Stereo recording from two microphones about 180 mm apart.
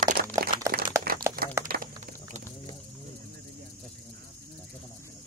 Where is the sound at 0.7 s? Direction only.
55° right (ahead or behind).